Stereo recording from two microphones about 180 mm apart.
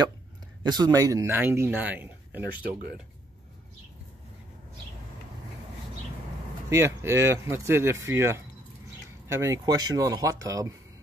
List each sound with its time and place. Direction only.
0.7 s a man's voice: 20° right (ahead or behind)
6.7 s a man's voice: 15° right (ahead or behind)